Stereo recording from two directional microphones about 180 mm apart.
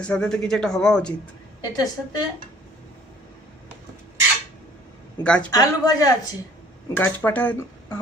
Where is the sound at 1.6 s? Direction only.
20° left (ahead or behind).